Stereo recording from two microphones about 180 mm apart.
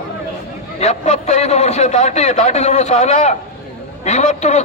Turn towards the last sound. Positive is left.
turn(degrees=40)  # may be behind; listen again after turning